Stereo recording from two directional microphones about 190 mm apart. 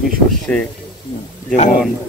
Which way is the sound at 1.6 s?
45° left (ahead or behind).